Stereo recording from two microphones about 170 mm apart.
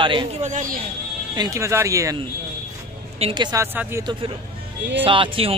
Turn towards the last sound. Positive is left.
turn(degrees=-30)  # may be behind; listen again after turning